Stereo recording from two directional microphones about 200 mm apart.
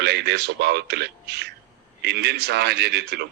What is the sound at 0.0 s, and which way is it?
Speech, 55° right (ahead or behind).